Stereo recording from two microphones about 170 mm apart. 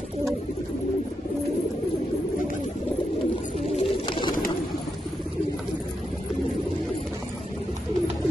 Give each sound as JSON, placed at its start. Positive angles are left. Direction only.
{"t": 3.7, "sound": "bird", "side_deg": 30}